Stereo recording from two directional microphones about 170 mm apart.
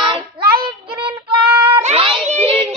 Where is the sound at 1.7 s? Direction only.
35° right (ahead or behind).